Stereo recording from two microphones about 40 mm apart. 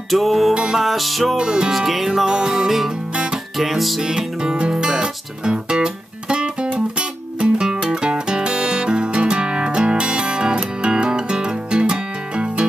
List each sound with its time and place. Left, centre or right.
0.1 s music: centre
1.3 s music: centre
1.7 s music: centre
2.2 s music: centre
4.0 s music: centre